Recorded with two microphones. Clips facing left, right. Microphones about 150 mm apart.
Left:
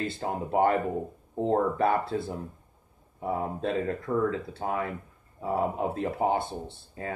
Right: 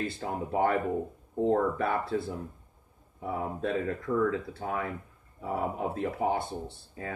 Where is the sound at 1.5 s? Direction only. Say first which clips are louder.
Left 3 dB; 30° left (ahead or behind).